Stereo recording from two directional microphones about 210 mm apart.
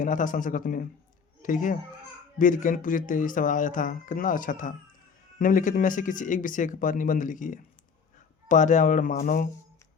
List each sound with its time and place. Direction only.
0.0 s speech: 40° left (ahead or behind)